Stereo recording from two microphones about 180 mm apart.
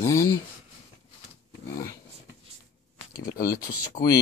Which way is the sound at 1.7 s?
15° left (ahead or behind).